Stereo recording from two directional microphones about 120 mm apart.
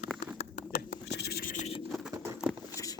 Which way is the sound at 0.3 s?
65° left (ahead or behind).